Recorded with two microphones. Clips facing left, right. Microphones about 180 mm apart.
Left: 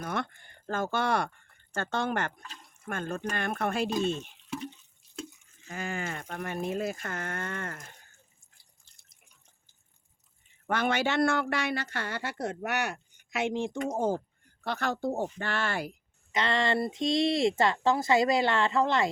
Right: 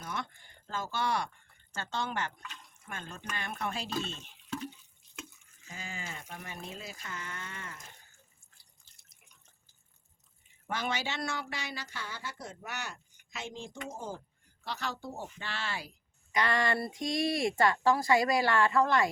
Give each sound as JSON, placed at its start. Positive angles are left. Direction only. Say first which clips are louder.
{"t": 0.0, "sound": "speech", "louder": "left 6 dB", "side_deg": 55}
{"t": 3.8, "sound": "speech", "louder": "left 8 dB", "side_deg": 15}
{"t": 5.6, "sound": "speech", "louder": "left 9 dB", "side_deg": 60}
{"t": 8.9, "sound": "drip", "louder": "even", "side_deg": -5}
{"t": 10.7, "sound": "speech", "louder": "left 7 dB", "side_deg": 60}
{"t": 16.3, "sound": "speech", "louder": "left 2 dB", "side_deg": 25}